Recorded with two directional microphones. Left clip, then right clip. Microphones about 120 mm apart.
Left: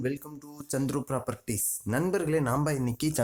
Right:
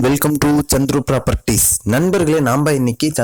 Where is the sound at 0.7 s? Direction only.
80° right.